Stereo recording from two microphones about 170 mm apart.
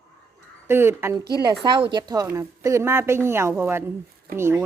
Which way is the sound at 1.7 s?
30° right (ahead or behind).